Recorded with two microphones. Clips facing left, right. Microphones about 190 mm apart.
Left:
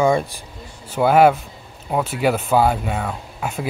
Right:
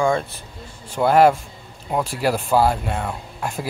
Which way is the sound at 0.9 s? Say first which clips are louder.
Left 1 dB; 5° left (ahead or behind).